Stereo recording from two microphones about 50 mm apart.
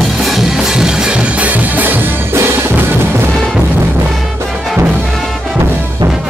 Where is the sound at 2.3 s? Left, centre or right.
Right.